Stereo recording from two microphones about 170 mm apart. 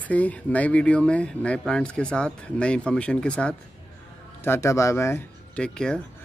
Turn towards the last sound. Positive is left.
turn(degrees=5)  # may be behind; listen again after turning